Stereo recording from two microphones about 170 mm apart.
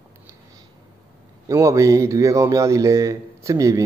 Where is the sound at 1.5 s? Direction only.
20° right (ahead or behind).